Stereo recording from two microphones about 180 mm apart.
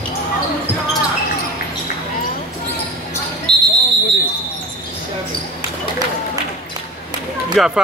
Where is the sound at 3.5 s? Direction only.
25° right (ahead or behind).